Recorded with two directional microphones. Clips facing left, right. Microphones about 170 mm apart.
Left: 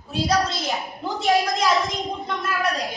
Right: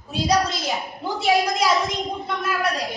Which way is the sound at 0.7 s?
Centre (ahead or behind).